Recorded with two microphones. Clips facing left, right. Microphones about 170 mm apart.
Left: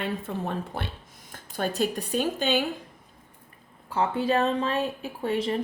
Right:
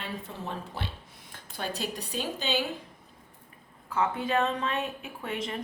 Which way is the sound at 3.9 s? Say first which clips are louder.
Left 3 dB; 30° left (ahead or behind).